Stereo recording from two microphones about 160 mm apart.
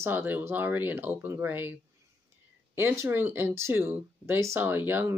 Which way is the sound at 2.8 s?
15° right (ahead or behind).